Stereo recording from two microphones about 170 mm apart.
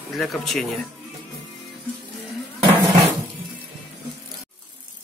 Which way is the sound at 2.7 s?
15° right (ahead or behind).